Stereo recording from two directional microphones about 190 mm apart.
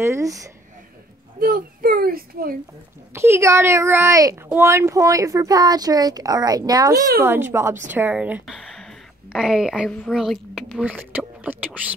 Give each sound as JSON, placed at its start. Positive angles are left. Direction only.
{"t": 0.0, "sound": "speech", "side_deg": -15}
{"t": 1.4, "sound": "speech", "side_deg": -50}
{"t": 3.1, "sound": "a woman's voice", "side_deg": -15}